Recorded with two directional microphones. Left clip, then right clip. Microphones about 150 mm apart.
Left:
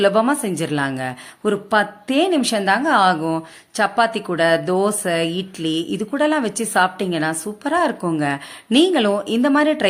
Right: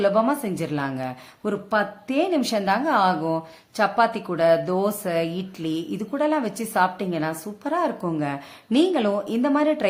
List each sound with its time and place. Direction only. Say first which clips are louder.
0.0 s a woman's voice: left 4 dB; 20° left (ahead or behind)